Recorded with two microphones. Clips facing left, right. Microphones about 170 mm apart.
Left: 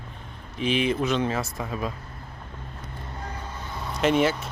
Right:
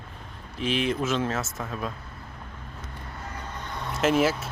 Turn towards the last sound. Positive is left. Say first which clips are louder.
# left 1 dB
turn(degrees=-5)  # may be behind; listen again after turning